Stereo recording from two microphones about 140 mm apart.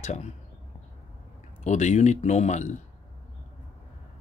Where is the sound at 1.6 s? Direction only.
55° left (ahead or behind).